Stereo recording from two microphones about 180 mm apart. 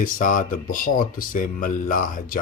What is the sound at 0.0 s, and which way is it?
Speech, 50° left (ahead or behind).